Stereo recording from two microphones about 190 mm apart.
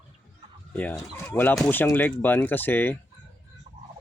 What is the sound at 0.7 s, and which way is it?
Speech, 10° left (ahead or behind).